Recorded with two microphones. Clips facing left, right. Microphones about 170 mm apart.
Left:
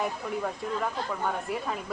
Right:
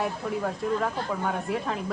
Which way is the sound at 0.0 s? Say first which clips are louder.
Right 2 dB; centre (ahead or behind).